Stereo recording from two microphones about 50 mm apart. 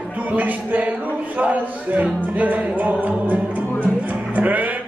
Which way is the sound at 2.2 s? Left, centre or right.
Right.